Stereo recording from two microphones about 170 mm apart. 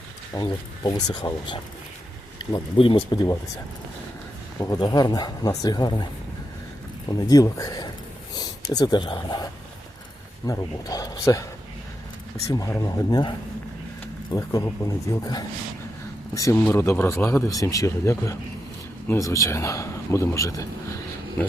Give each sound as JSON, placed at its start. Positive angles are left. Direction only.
{"t": 0.3, "sound": "speech", "side_deg": 25}
{"t": 4.6, "sound": "speech", "side_deg": 20}
{"t": 7.3, "sound": "speech", "side_deg": 20}
{"t": 12.5, "sound": "speech", "side_deg": 20}